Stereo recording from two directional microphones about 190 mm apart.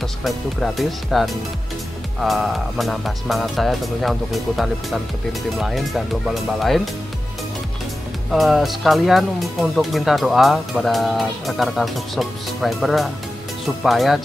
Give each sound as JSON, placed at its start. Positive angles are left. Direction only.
{"t": 0.2, "sound": "speech", "side_deg": 0}
{"t": 8.3, "sound": "speech", "side_deg": 0}